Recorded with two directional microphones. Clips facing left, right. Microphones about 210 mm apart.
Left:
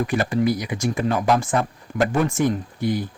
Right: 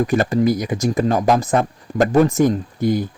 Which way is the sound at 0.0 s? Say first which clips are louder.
Right 4 dB; 40° right (ahead or behind).